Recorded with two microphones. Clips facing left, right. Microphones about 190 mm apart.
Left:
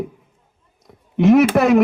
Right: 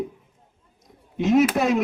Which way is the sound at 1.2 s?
65° left (ahead or behind).